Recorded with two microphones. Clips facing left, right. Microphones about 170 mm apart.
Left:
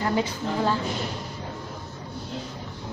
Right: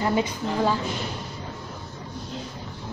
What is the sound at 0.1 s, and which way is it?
Speech, 15° right (ahead or behind).